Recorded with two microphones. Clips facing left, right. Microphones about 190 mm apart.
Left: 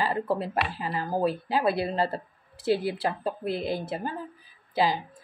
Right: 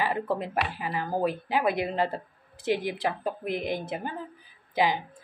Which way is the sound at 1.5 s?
15° right (ahead or behind).